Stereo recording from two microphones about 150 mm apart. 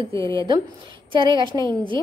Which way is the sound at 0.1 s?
20° left (ahead or behind).